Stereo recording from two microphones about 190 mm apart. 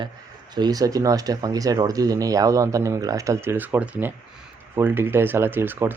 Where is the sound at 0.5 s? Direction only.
20° right (ahead or behind).